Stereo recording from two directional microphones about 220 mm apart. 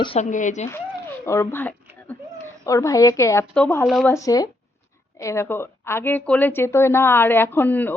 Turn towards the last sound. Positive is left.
turn(degrees=10)  # may be behind; listen again after turning